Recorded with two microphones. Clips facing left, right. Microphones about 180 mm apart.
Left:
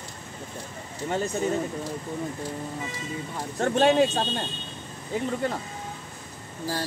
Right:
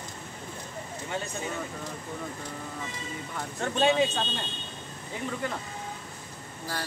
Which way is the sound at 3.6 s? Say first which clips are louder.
Left 4 dB; 50° left (ahead or behind).